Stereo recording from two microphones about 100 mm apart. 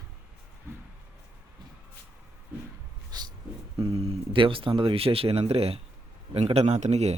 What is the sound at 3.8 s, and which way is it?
Speech, 75° right (ahead or behind).